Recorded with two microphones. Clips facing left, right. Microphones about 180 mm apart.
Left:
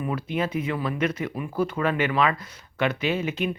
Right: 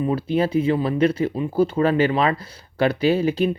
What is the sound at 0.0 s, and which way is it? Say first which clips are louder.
Speech: right 6 dB; 30° right (ahead or behind).